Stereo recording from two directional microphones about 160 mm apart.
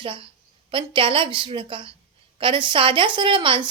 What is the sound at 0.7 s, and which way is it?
A woman's voice, 30° right (ahead or behind).